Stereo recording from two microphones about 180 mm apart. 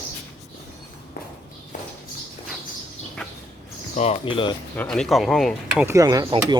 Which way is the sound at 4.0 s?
30° left (ahead or behind).